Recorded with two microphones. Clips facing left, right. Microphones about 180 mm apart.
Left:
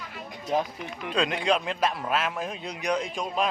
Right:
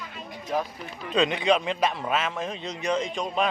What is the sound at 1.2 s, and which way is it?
A man's voice, centre (ahead or behind).